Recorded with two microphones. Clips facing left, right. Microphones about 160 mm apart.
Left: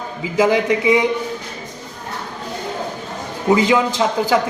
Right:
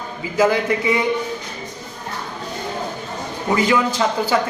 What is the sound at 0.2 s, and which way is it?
Speech, 15° left (ahead or behind).